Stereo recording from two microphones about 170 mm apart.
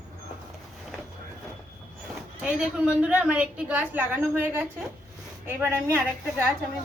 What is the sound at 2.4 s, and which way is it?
A woman's voice, 10° right (ahead or behind).